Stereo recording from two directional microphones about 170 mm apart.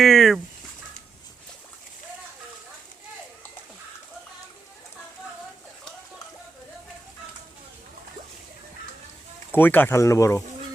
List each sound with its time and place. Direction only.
0.0 s fowl: centre (ahead or behind)
9.5 s speech: 10° left (ahead or behind)